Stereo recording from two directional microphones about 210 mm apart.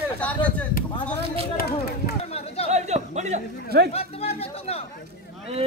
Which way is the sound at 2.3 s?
30° left (ahead or behind).